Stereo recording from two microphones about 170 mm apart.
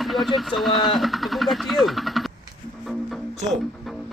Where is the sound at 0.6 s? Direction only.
Centre (ahead or behind).